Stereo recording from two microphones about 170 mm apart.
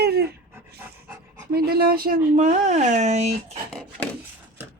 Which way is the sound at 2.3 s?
45° right (ahead or behind).